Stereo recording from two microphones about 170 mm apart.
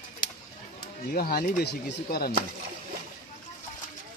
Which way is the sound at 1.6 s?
70° left (ahead or behind).